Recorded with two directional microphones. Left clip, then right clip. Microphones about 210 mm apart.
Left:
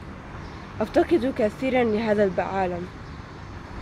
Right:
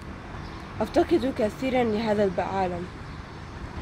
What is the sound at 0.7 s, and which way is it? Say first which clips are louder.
Speech: left 2 dB; 30° left (ahead or behind).